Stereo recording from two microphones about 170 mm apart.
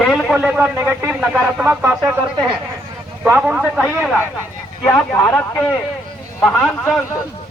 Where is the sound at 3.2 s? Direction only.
10° right (ahead or behind); by 7.0 s 5° left (ahead or behind).